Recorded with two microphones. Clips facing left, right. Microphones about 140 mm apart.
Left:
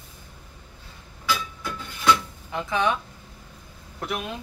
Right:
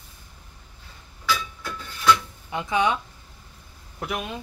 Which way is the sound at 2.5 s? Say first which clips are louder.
Right 1 dB; 20° right (ahead or behind).